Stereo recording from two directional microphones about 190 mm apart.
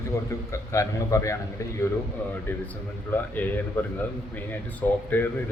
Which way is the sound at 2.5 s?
10° left (ahead or behind).